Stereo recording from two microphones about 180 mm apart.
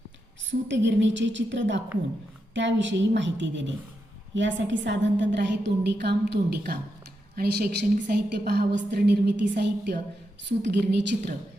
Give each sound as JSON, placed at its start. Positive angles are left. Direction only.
{"t": 0.7, "sound": "a woman's voice", "side_deg": -90}